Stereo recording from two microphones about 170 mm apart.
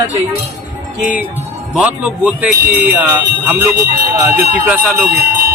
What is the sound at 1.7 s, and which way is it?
Speech, 5° right (ahead or behind).